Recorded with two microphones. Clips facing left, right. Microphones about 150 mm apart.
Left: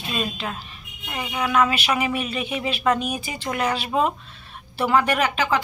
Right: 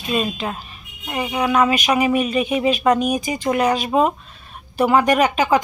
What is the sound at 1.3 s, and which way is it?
Speech, 35° right (ahead or behind).